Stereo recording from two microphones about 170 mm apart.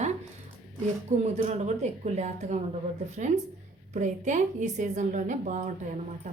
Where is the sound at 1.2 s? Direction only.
40° right (ahead or behind).